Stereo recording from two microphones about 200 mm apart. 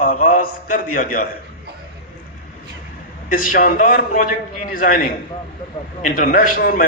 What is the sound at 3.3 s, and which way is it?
A man's voice, 40° left (ahead or behind).